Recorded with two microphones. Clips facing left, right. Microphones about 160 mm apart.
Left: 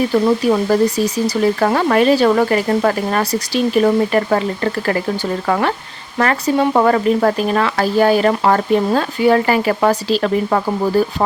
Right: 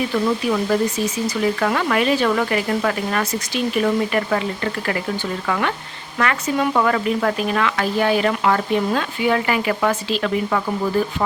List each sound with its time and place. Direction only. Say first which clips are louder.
0.1 s speech: left 6 dB; 35° left (ahead or behind)